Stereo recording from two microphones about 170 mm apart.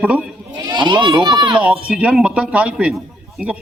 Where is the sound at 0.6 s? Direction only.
25° right (ahead or behind).